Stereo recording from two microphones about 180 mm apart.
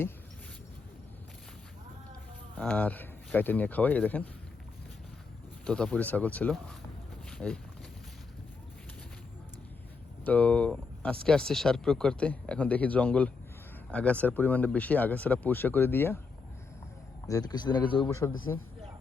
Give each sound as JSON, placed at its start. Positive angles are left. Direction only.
{"t": 2.6, "sound": "speech", "side_deg": 5}
{"t": 5.6, "sound": "speech", "side_deg": 5}
{"t": 7.3, "sound": "a sound", "side_deg": 5}
{"t": 10.2, "sound": "speech", "side_deg": 10}
{"t": 17.2, "sound": "speech", "side_deg": 20}